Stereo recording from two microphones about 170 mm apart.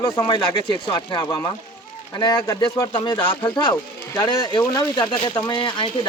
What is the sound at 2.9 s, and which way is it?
Speech, 25° left (ahead or behind).